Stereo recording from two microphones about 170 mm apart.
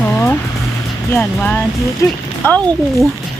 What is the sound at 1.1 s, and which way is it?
Speech, 10° left (ahead or behind).